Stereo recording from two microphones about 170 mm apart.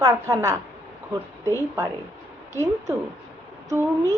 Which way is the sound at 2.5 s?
15° right (ahead or behind).